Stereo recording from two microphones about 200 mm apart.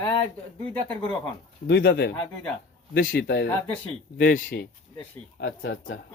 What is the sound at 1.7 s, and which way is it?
Speech, 55° left (ahead or behind).